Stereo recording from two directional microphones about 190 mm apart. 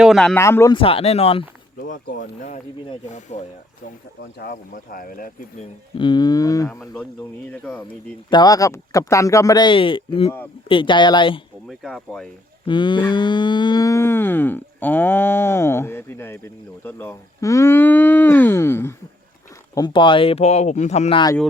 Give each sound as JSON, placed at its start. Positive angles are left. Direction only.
{"t": 0.0, "sound": "speech", "side_deg": 0}
{"t": 0.3, "sound": "cattle", "side_deg": 15}
{"t": 0.8, "sound": "speech", "side_deg": 30}
{"t": 1.8, "sound": "speech", "side_deg": 50}
{"t": 2.9, "sound": "speech", "side_deg": 40}
{"t": 4.4, "sound": "speech", "side_deg": 50}
{"t": 5.9, "sound": "speech", "side_deg": 25}
{"t": 6.7, "sound": "speech", "side_deg": 5}
{"t": 7.5, "sound": "cattle", "side_deg": 10}
{"t": 8.3, "sound": "speech", "side_deg": 20}
{"t": 11.7, "sound": "speech", "side_deg": 0}
{"t": 12.6, "sound": "cattle", "side_deg": 25}
{"t": 19.7, "sound": "speech", "side_deg": 25}